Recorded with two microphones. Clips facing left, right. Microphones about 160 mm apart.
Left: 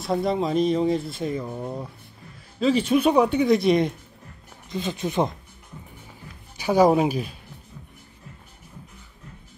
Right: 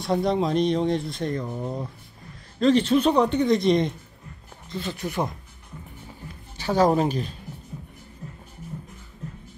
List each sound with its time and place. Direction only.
0.0 s speech: centre (ahead or behind)
4.6 s speech: 15° left (ahead or behind)
6.5 s speech: 10° left (ahead or behind)